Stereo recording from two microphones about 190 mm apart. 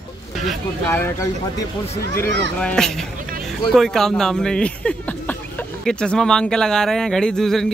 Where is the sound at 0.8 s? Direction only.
10° left (ahead or behind).